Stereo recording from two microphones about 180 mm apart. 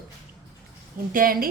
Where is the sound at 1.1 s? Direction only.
50° right (ahead or behind).